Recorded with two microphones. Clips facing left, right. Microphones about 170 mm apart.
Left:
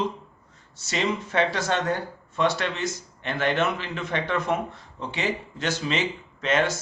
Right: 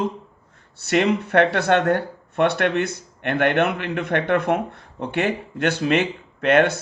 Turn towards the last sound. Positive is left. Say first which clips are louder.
# right 7 dB
turn(degrees=-60)  # may be behind; listen again after turning